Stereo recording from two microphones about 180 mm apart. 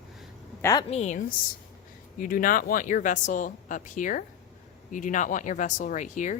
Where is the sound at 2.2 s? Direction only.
50° left (ahead or behind).